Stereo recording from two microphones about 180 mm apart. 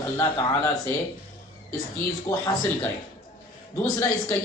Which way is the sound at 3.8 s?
15° left (ahead or behind).